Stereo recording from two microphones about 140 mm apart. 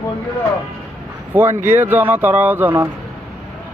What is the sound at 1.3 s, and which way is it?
Speech, 15° right (ahead or behind).